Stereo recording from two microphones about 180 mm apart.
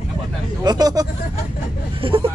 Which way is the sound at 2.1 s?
30° right (ahead or behind).